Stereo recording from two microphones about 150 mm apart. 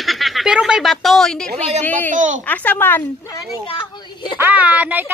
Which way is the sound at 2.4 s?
10° left (ahead or behind).